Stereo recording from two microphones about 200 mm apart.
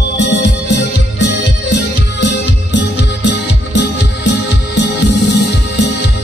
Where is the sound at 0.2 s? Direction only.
60° left (ahead or behind).